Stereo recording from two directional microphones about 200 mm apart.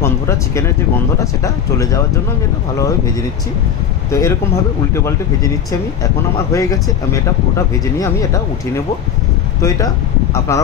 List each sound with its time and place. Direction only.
0.0 s speech: 15° left (ahead or behind)
4.1 s speech: 15° left (ahead or behind)
10.5 s speech: 15° left (ahead or behind)